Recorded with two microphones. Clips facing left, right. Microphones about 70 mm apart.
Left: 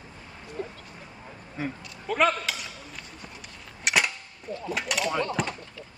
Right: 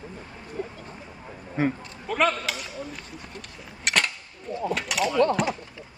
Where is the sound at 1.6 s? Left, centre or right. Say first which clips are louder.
Right 8 dB; right.